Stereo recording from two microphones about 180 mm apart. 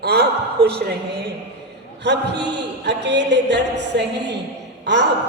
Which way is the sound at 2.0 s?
70° right (ahead or behind).